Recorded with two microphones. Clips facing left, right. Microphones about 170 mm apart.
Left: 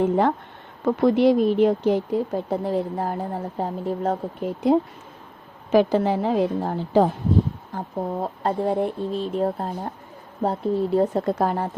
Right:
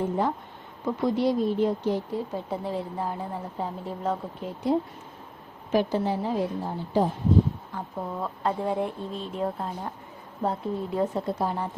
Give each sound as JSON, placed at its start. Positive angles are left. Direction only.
{"t": 0.0, "sound": "speech", "side_deg": 70}
{"t": 2.3, "sound": "a woman's voice", "side_deg": 45}
{"t": 5.7, "sound": "a woman's voice", "side_deg": 90}
{"t": 7.7, "sound": "speech", "side_deg": 40}
{"t": 11.2, "sound": "speech", "side_deg": 65}